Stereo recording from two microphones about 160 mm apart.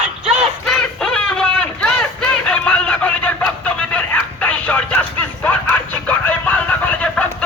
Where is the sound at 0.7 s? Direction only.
5° left (ahead or behind).